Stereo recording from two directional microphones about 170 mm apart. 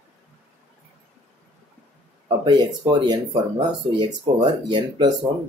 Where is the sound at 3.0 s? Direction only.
25° right (ahead or behind).